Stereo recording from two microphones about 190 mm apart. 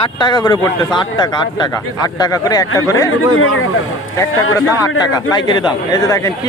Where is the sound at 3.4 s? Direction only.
90° left.